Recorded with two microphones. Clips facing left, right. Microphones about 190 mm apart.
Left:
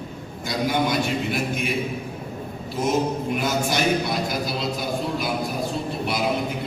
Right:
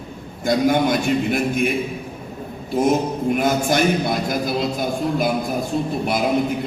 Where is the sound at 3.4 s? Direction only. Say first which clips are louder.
Right 6 dB; 50° right (ahead or behind).